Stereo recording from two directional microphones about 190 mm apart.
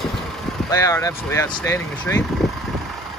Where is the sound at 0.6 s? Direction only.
15° left (ahead or behind).